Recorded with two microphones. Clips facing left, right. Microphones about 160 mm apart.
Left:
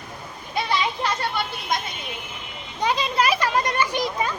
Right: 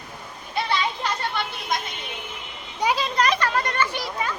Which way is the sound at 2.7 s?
10° right (ahead or behind).